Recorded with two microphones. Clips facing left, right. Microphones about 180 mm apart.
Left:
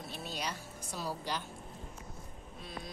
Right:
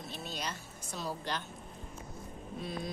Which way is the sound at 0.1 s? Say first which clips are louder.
Left 1 dB; 10° left (ahead or behind).